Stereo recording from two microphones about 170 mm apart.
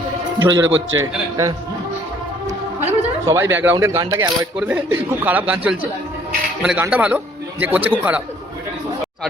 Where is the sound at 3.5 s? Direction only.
15° right (ahead or behind).